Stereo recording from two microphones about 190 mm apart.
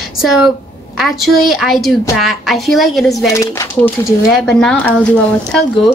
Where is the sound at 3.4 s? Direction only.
15° left (ahead or behind).